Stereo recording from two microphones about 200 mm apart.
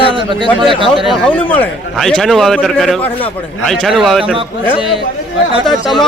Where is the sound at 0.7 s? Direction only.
25° right (ahead or behind).